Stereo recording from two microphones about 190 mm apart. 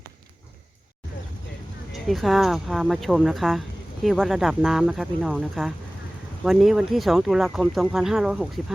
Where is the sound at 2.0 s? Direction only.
Centre (ahead or behind).